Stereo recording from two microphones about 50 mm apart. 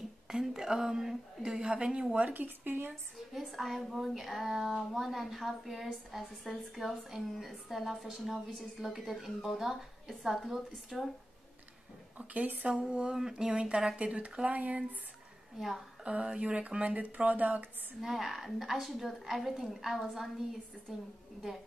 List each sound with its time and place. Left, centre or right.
0.3 s a woman's voice: centre
2.1 s speech: right
2.9 s a woman's voice: centre
12.2 s speech: right
12.6 s speech: centre
15.5 s a woman's voice: centre
16.0 s speech: right
18.0 s a woman's voice: centre